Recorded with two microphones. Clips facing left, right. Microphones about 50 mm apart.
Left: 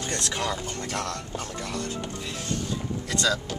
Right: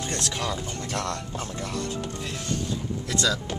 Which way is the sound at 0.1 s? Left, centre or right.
Left.